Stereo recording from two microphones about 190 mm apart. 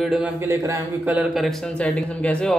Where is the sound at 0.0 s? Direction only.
Centre (ahead or behind).